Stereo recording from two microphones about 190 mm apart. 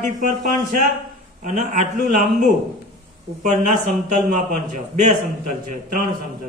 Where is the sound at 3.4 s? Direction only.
40° right (ahead or behind).